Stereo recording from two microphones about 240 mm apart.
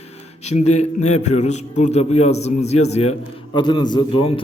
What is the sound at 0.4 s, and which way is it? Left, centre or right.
A man's voice, left.